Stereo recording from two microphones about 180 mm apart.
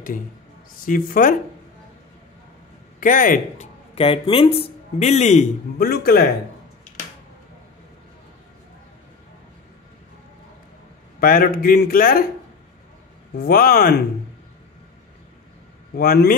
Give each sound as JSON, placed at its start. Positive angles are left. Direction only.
{"t": 0.8, "sound": "speech", "side_deg": 50}
{"t": 3.0, "sound": "speech", "side_deg": 50}
{"t": 3.9, "sound": "speech", "side_deg": 30}
{"t": 5.8, "sound": "speech", "side_deg": 60}
{"t": 11.1, "sound": "speech", "side_deg": 55}
{"t": 13.4, "sound": "speech", "side_deg": 55}
{"t": 16.0, "sound": "speech", "side_deg": 55}